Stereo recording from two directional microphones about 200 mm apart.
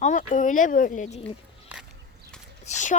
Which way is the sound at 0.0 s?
40° left (ahead or behind).